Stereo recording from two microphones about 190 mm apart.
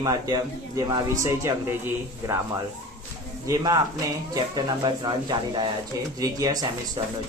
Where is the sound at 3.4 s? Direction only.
20° right (ahead or behind).